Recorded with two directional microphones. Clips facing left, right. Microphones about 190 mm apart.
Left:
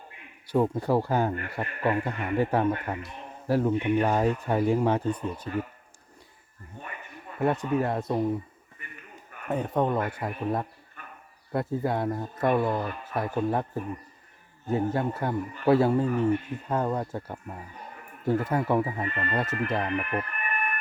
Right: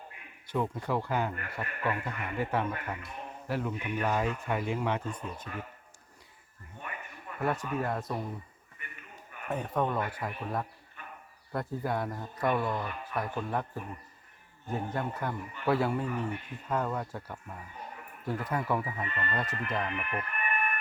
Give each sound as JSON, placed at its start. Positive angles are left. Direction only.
{"t": 0.5, "sound": "speech", "side_deg": 35}
{"t": 6.8, "sound": "a sound", "side_deg": 35}
{"t": 7.4, "sound": "a man's voice", "side_deg": 25}
{"t": 9.5, "sound": "a man's voice", "side_deg": 20}